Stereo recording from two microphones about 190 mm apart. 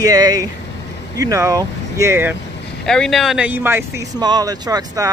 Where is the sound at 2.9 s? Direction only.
Centre (ahead or behind); by 5.1 s 20° right (ahead or behind).